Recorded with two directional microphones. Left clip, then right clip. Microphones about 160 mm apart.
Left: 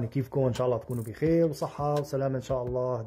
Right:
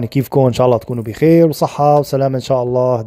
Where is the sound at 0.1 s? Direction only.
50° right (ahead or behind).